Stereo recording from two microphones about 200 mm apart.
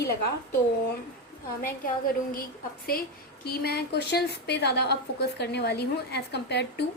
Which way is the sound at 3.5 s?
50° left (ahead or behind).